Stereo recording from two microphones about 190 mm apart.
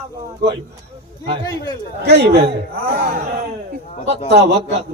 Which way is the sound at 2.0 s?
65° right (ahead or behind).